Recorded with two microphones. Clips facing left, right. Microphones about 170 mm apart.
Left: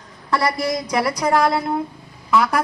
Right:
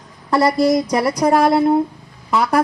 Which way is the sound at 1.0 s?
30° right (ahead or behind).